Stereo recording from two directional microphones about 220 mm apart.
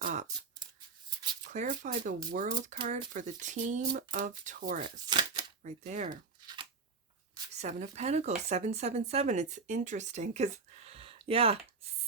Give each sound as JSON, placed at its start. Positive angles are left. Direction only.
{"t": 0.0, "sound": "scissors", "side_deg": -35}
{"t": 0.6, "sound": "a sound", "side_deg": -20}
{"t": 1.5, "sound": "speech", "side_deg": -35}
{"t": 5.0, "sound": "a sound", "side_deg": -20}
{"t": 5.6, "sound": "speech", "side_deg": -30}
{"t": 7.6, "sound": "speech", "side_deg": -30}